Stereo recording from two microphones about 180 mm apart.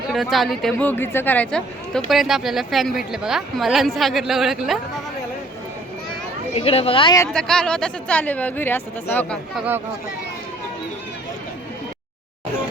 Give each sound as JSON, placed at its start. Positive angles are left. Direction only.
{"t": 0.1, "sound": "speech", "side_deg": 0}
{"t": 6.5, "sound": "speech", "side_deg": 35}
{"t": 7.3, "sound": "speech", "side_deg": 5}
{"t": 9.6, "sound": "speech", "side_deg": -10}